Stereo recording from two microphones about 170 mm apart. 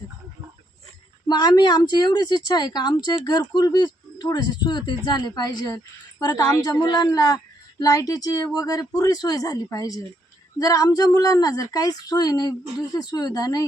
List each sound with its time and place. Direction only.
1.3 s a woman's voice: 25° left (ahead or behind)